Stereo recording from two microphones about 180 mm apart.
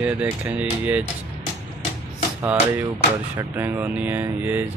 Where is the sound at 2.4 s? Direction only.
10° right (ahead or behind).